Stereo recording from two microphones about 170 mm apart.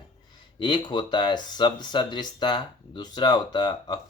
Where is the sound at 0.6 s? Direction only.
25° left (ahead or behind).